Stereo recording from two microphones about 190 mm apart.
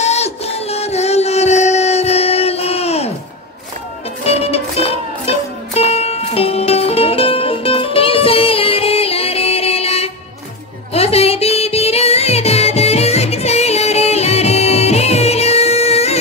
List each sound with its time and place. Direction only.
0.0 s music: 35° left (ahead or behind)
4.2 s music: 30° left (ahead or behind)